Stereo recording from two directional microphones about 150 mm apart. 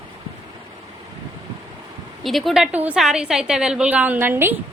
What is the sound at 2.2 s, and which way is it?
A woman's voice, centre (ahead or behind).